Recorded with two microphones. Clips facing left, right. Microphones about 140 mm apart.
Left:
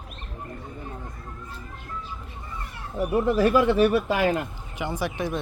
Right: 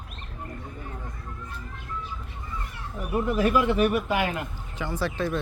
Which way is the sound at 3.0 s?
30° left (ahead or behind).